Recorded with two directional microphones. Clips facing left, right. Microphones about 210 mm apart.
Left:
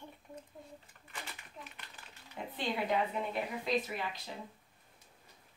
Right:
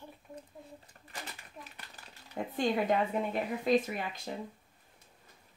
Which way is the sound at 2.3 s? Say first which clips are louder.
Right 7 dB; 45° right (ahead or behind).